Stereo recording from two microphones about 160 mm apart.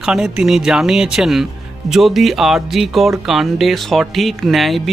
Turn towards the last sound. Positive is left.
turn(degrees=0)  # may be behind; listen again after turning